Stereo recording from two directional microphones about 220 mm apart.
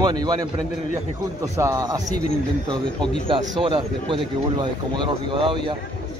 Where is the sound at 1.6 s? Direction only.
15° right (ahead or behind).